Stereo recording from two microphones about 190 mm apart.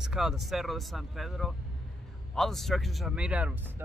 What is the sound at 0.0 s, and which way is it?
Speech, centre (ahead or behind).